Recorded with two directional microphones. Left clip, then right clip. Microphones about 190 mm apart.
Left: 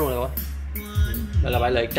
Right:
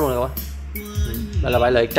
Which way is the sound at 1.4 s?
30° right (ahead or behind).